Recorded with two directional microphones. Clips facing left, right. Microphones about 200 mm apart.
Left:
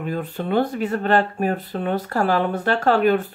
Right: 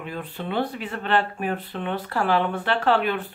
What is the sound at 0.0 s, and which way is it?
Speech, 45° left (ahead or behind).